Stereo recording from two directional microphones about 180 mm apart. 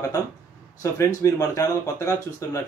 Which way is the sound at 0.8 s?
15° left (ahead or behind).